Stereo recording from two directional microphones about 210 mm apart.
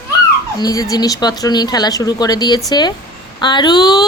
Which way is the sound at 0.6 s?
15° left (ahead or behind).